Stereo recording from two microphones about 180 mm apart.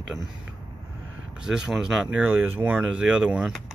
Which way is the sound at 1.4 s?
5° right (ahead or behind).